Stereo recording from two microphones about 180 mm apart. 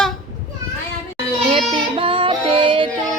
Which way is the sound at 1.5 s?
30° right (ahead or behind).